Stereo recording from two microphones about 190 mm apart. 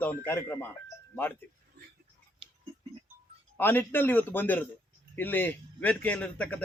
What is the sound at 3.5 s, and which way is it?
Speech, 10° left (ahead or behind).